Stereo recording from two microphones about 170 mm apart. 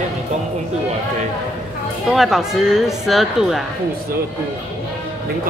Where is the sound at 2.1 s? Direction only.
Centre (ahead or behind).